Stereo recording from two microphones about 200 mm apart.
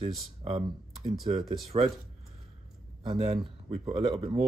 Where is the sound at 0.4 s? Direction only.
25° right (ahead or behind).